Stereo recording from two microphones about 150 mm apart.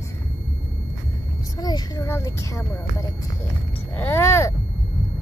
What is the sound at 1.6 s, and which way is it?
Speech, 25° left (ahead or behind).